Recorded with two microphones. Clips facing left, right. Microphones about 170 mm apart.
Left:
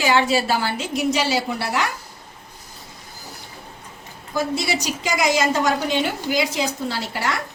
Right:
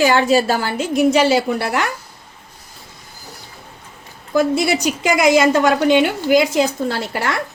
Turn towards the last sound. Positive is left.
turn(degrees=-55)  # may be behind; listen again after turning